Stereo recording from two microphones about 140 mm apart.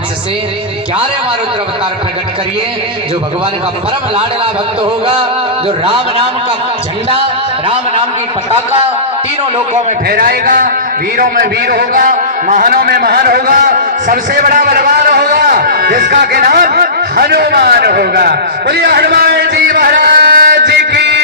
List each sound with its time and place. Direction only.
5.8 s a man's voice: 40° right (ahead or behind)
10.1 s a man's voice: 90° right
11.9 s a man's voice: 75° right (ahead or behind)
19.1 s music: 90° right